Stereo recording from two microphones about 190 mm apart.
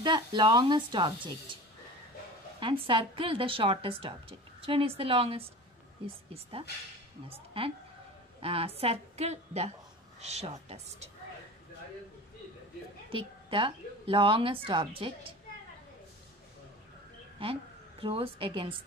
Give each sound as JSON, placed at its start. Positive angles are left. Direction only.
{"t": 0.0, "sound": "a woman's voice", "side_deg": -25}
{"t": 2.6, "sound": "a woman's voice", "side_deg": -25}
{"t": 13.1, "sound": "a woman's voice", "side_deg": -30}
{"t": 17.4, "sound": "a woman's voice", "side_deg": -30}